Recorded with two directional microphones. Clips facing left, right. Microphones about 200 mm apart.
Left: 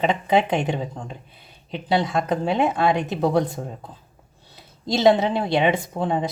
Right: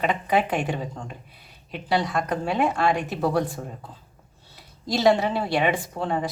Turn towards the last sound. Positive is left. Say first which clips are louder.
# left 3 dB
turn(degrees=20)  # may be behind; listen again after turning